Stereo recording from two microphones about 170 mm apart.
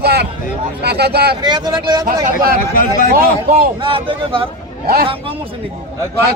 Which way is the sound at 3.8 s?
30° right (ahead or behind).